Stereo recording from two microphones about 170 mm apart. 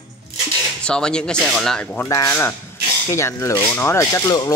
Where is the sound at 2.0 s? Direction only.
20° left (ahead or behind).